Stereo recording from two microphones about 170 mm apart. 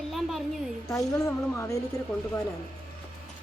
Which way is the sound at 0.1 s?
Centre (ahead or behind).